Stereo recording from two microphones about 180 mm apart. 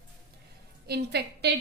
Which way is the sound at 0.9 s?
65° right (ahead or behind).